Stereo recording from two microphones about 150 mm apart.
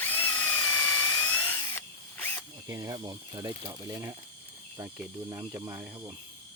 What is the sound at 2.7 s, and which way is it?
Speech, 25° right (ahead or behind).